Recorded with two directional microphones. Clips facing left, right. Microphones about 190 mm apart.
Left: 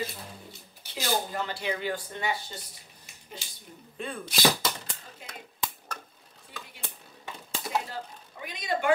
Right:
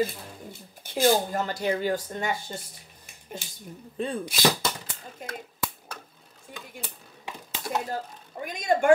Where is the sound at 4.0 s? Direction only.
35° right (ahead or behind).